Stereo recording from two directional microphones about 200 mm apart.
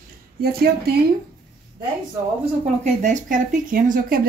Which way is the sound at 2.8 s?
40° right (ahead or behind).